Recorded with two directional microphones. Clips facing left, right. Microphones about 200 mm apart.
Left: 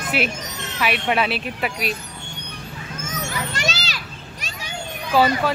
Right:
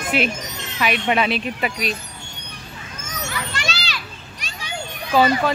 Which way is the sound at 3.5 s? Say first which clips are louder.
Left 2 dB; 45° left (ahead or behind).